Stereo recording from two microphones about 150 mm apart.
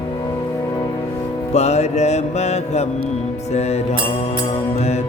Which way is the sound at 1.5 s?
45° left (ahead or behind).